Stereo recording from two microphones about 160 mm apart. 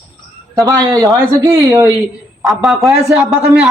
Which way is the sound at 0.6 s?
25° right (ahead or behind).